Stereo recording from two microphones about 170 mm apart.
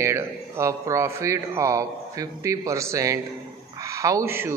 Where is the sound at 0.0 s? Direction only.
15° right (ahead or behind).